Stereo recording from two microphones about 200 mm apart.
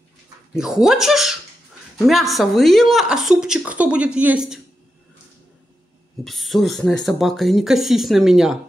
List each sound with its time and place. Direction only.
0.6 s a woman's voice: 5° right (ahead or behind)
6.2 s a woman's voice: centre (ahead or behind)